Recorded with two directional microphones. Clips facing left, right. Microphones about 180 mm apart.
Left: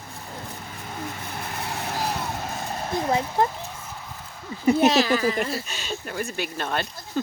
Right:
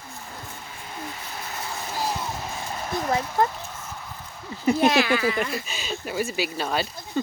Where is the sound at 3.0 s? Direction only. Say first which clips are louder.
Left 1 dB; 25° left (ahead or behind).